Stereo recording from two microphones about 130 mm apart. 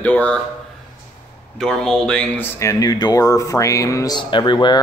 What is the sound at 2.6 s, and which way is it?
Speech, 25° left (ahead or behind).